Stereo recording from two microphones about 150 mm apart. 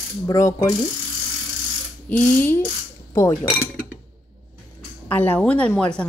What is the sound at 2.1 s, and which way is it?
Speech, 10° left (ahead or behind).